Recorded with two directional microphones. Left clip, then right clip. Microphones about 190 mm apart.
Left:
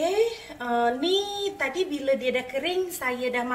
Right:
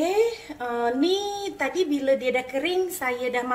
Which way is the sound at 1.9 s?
45° right (ahead or behind).